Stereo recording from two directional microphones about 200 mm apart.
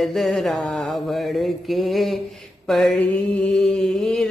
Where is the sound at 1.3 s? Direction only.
Centre (ahead or behind).